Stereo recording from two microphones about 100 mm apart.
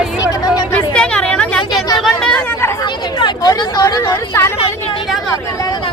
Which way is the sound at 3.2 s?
40° left (ahead or behind).